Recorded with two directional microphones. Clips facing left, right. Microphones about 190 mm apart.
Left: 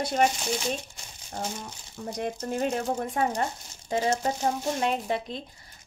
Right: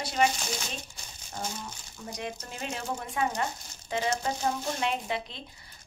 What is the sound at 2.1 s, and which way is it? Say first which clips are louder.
Speech: left 8 dB; 50° left (ahead or behind).